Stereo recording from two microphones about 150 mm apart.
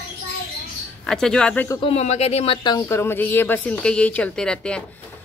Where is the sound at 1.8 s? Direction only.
40° left (ahead or behind).